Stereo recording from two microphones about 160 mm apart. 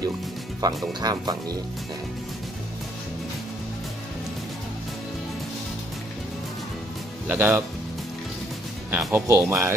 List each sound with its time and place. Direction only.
0.6 s speech: 25° right (ahead or behind)
7.2 s speech: 10° right (ahead or behind)
8.9 s speech: 15° right (ahead or behind)